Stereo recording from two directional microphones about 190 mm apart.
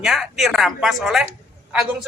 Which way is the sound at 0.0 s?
Centre (ahead or behind).